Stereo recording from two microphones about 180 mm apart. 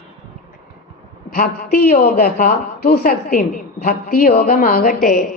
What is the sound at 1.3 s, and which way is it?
A woman's voice, 50° left (ahead or behind).